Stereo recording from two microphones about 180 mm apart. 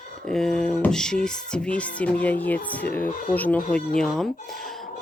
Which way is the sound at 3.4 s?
10° left (ahead or behind).